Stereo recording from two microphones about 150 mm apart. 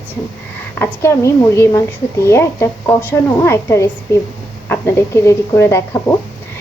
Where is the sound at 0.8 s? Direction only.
15° left (ahead or behind).